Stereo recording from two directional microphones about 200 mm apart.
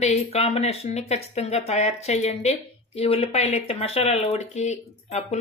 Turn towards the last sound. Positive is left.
turn(degrees=35)  # may be behind; listen again after turning